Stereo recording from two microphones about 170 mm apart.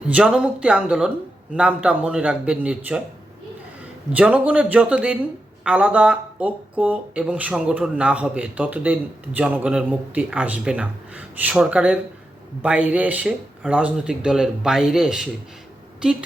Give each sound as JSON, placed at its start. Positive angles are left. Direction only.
{"t": 0.1, "sound": "speech", "side_deg": -5}
{"t": 4.1, "sound": "speech", "side_deg": -10}